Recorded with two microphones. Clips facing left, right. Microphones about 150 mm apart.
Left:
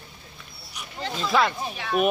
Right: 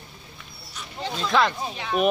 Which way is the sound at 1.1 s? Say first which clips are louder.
Right 1 dB; 5° left (ahead or behind).